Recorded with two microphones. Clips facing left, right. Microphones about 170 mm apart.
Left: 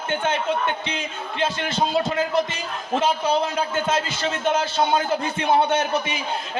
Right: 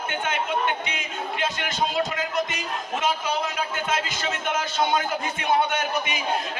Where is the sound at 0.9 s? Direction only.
30° left (ahead or behind).